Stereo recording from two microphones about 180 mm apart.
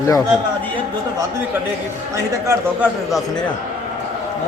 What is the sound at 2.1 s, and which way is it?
Speech, 15° right (ahead or behind).